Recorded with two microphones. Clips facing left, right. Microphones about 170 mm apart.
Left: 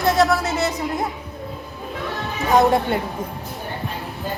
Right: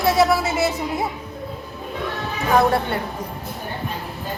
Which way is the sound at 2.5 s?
20° left (ahead or behind).